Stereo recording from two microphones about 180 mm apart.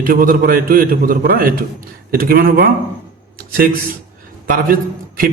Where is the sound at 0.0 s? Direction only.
50° right (ahead or behind).